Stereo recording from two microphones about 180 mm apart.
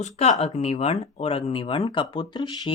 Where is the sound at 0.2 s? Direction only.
35° left (ahead or behind).